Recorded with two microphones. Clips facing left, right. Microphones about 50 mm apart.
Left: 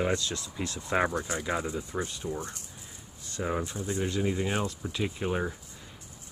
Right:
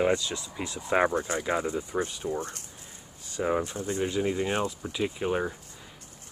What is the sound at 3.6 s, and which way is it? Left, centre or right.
Speech, right.